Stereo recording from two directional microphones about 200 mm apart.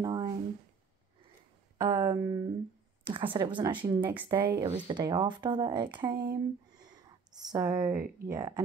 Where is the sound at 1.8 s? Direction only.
20° right (ahead or behind).